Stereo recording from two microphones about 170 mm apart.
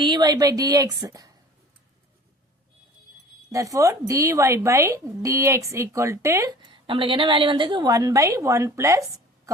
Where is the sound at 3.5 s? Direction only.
20° right (ahead or behind).